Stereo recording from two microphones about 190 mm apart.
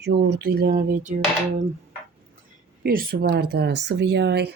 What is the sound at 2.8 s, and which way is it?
Speech, 50° right (ahead or behind).